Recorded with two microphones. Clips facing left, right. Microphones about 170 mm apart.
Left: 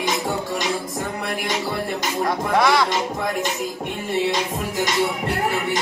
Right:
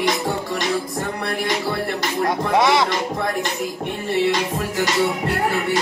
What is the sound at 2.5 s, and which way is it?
Speech, 20° right (ahead or behind).